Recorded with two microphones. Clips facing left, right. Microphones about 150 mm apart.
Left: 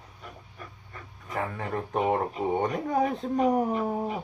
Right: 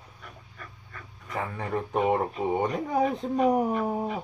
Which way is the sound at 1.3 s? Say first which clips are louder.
Even; centre (ahead or behind).